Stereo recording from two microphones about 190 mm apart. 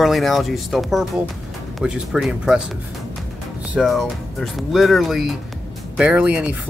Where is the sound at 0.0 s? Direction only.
Centre (ahead or behind).